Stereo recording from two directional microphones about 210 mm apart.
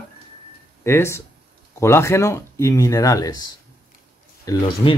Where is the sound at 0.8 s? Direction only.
15° left (ahead or behind).